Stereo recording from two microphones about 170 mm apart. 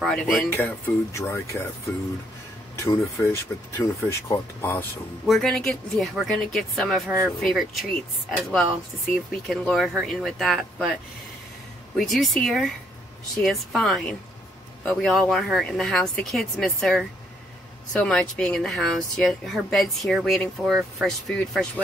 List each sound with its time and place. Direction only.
0.0 s a woman's voice: 5° left (ahead or behind)
2.7 s speech: 15° left (ahead or behind)
5.2 s a woman's voice: centre (ahead or behind)
12.0 s a woman's voice: centre (ahead or behind)